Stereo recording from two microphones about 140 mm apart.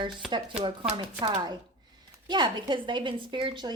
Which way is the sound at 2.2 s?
30° right (ahead or behind).